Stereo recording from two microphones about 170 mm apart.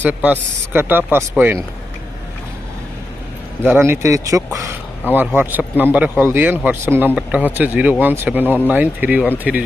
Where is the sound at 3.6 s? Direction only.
15° right (ahead or behind).